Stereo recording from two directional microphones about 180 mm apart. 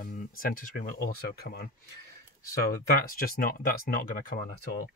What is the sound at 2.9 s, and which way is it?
Speech, 55° left (ahead or behind).